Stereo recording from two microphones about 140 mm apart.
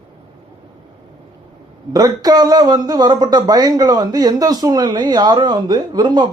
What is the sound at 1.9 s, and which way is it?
Speech, 25° right (ahead or behind).